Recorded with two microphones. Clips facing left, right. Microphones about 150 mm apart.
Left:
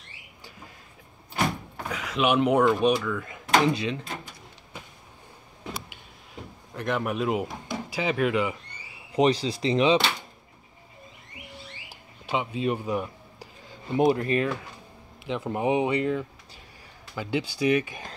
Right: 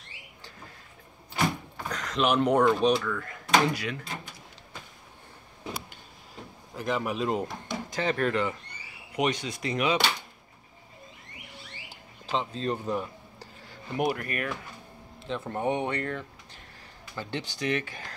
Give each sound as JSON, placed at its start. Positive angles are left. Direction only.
{"t": 1.9, "sound": "speech", "side_deg": 5}
{"t": 6.7, "sound": "a man's voice", "side_deg": 0}
{"t": 9.1, "sound": "speech", "side_deg": 30}
{"t": 12.3, "sound": "a sound", "side_deg": 10}
{"t": 13.9, "sound": "speech", "side_deg": 25}